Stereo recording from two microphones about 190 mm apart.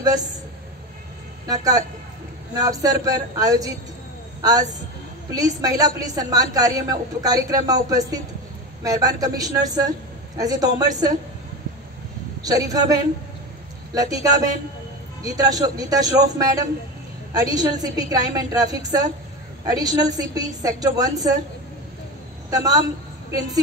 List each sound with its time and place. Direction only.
1.5 s speech: 20° right (ahead or behind)
12.4 s speech: 20° right (ahead or behind)
14.1 s a woman's voice: 20° right (ahead or behind)
22.5 s speech: 20° right (ahead or behind)